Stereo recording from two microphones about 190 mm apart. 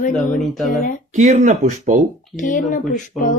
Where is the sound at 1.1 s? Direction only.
40° right (ahead or behind).